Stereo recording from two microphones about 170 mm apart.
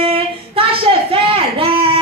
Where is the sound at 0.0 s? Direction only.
35° right (ahead or behind).